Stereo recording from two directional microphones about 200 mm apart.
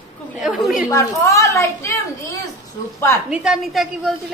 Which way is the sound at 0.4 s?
Centre (ahead or behind).